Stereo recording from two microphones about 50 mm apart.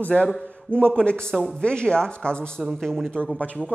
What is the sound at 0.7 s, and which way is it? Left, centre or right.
A man's voice, left.